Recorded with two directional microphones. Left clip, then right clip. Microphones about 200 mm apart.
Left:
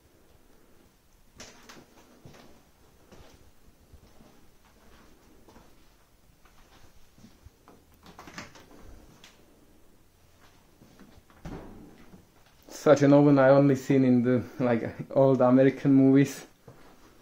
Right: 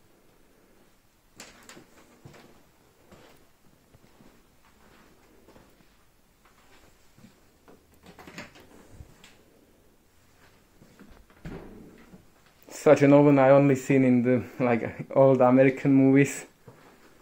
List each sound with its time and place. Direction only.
12.6 s a sound: 15° left (ahead or behind)
13.1 s speech: 10° left (ahead or behind)
13.7 s speech: centre (ahead or behind)